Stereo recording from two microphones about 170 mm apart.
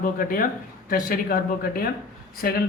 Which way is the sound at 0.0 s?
55° left (ahead or behind).